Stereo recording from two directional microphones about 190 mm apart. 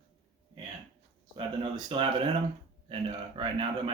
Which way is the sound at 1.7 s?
30° right (ahead or behind).